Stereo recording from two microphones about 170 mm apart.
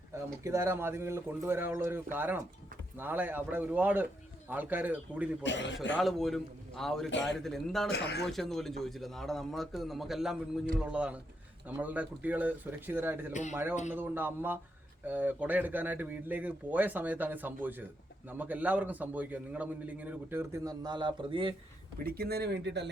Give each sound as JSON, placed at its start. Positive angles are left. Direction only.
{"t": 0.4, "sound": "a man's voice", "side_deg": -15}
{"t": 5.4, "sound": "a man's voice", "side_deg": 90}
{"t": 6.0, "sound": "a man's voice", "side_deg": 0}
{"t": 7.1, "sound": "a man's voice", "side_deg": 90}
{"t": 7.3, "sound": "a man's voice", "side_deg": 0}
{"t": 7.9, "sound": "speech", "side_deg": 70}
{"t": 8.3, "sound": "a man's voice", "side_deg": 0}
{"t": 22.0, "sound": "speech", "side_deg": -65}